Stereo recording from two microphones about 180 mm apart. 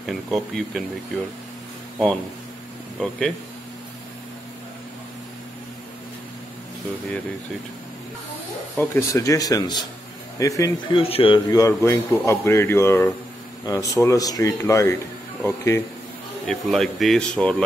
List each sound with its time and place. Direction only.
0.1 s speech: centre (ahead or behind)
3.0 s speech: 5° left (ahead or behind)
8.7 s speech: 15° left (ahead or behind)
11.0 s a man's voice: 30° left (ahead or behind); by 15.8 s 15° left (ahead or behind)
16.4 s speech: centre (ahead or behind)